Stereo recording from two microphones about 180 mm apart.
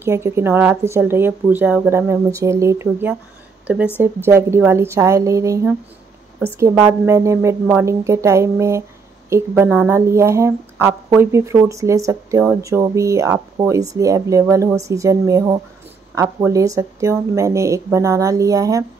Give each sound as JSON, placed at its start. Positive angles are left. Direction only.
{"t": 0.0, "sound": "a woman's voice", "side_deg": -15}